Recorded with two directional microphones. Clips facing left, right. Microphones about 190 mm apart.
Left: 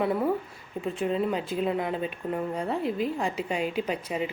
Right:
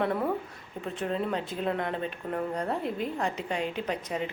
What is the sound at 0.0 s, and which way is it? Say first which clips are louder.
Speech: left 2 dB; 5° left (ahead or behind).